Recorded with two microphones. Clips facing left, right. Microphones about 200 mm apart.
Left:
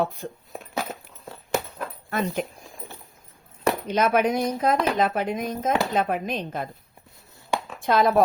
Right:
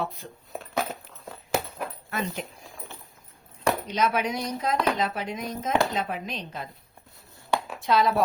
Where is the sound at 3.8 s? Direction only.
55° left (ahead or behind).